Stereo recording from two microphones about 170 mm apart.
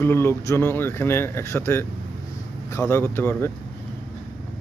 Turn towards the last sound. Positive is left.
turn(degrees=10)  # may be behind; listen again after turning